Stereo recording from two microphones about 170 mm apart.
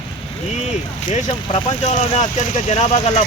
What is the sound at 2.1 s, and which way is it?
Speech, 45° left (ahead or behind).